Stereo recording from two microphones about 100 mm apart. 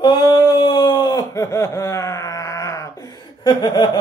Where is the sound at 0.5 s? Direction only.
50° left (ahead or behind); by 2.9 s 30° left (ahead or behind).